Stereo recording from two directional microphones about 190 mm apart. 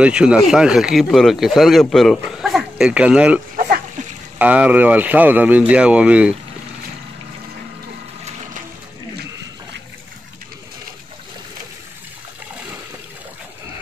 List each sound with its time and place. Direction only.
0.0 s speech: 5° right (ahead or behind)